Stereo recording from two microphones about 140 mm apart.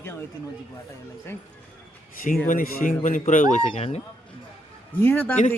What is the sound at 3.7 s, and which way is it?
Speech, 45° left (ahead or behind).